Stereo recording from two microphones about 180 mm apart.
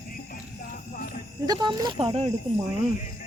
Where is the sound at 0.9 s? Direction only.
50° left (ahead or behind).